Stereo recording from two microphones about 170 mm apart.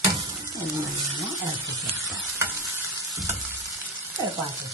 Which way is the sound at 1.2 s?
20° right (ahead or behind).